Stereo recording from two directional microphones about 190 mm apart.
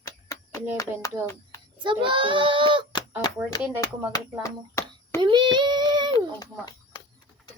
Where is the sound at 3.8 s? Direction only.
20° left (ahead or behind).